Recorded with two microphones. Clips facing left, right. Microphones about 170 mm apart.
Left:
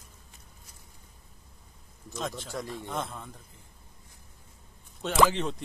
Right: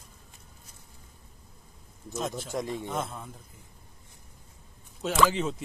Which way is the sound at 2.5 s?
15° right (ahead or behind).